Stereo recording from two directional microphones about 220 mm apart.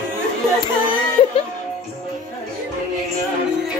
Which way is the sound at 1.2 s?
25° left (ahead or behind).